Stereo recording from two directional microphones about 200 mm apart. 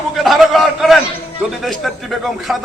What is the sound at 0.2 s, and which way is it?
A man's voice, centre (ahead or behind).